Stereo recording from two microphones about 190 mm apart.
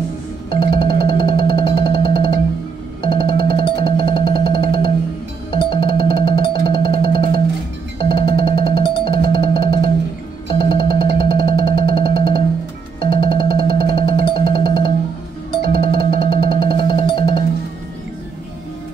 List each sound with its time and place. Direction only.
0.5 s music: 25° left (ahead or behind)